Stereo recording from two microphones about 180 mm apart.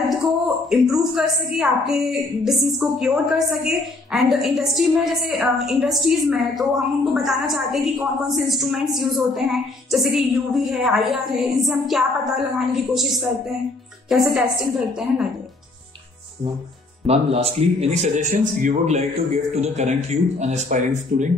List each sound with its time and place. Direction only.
0.7 s a woman's voice: centre (ahead or behind)
17.0 s a man's voice: 35° right (ahead or behind)